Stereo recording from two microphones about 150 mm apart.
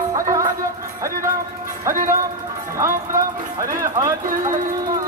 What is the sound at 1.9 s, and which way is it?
Music, 60° right (ahead or behind).